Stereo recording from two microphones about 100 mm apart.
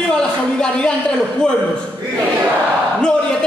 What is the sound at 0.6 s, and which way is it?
Speech, 10° left (ahead or behind).